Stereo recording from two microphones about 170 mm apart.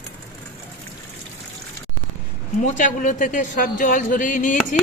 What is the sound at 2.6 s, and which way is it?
Speech, 50° left (ahead or behind).